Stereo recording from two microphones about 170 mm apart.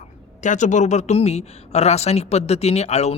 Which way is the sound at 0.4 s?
45° left (ahead or behind).